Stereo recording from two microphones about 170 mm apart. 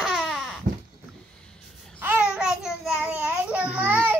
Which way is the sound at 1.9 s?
10° right (ahead or behind).